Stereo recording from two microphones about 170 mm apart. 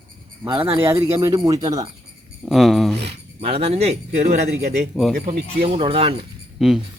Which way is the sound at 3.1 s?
35° right (ahead or behind).